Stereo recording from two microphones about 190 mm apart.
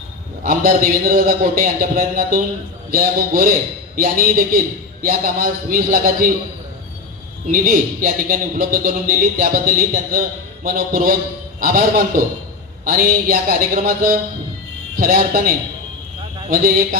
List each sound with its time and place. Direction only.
0.4 s speech: 50° right (ahead or behind)
7.5 s speech: 45° right (ahead or behind)